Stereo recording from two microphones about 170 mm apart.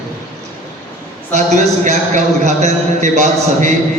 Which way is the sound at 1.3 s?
45° right (ahead or behind).